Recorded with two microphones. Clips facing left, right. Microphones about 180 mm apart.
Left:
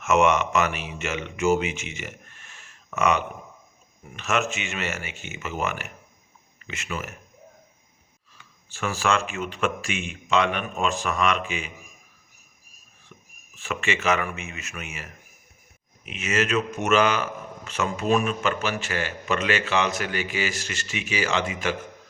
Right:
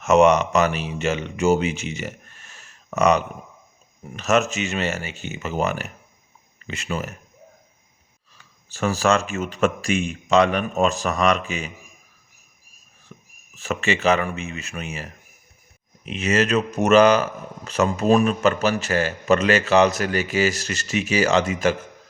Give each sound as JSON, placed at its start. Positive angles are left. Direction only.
{"t": 0.0, "sound": "speech", "side_deg": -35}
{"t": 8.7, "sound": "speech", "side_deg": -40}
{"t": 13.6, "sound": "speech", "side_deg": -40}